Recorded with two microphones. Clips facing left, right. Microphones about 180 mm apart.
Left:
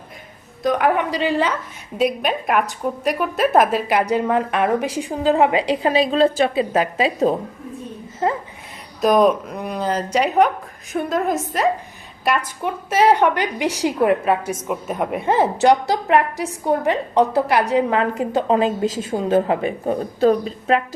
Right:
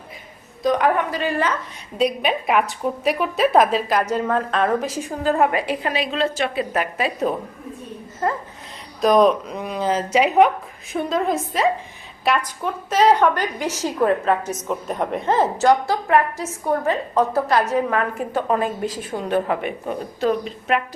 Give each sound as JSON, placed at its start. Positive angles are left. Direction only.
{"t": 0.6, "sound": "a woman's voice", "side_deg": 0}
{"t": 0.9, "sound": "a woman's voice", "side_deg": 15}
{"t": 2.0, "sound": "a woman's voice", "side_deg": 0}
{"t": 9.0, "sound": "a woman's voice", "side_deg": 0}